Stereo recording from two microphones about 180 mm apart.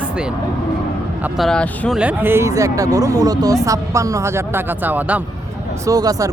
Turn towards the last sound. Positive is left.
turn(degrees=-20)  # may be behind; listen again after turning